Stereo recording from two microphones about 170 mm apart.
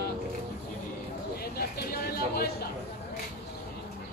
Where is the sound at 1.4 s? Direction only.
65° left (ahead or behind).